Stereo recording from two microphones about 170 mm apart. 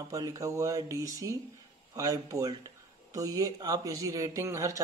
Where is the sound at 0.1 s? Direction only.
20° right (ahead or behind).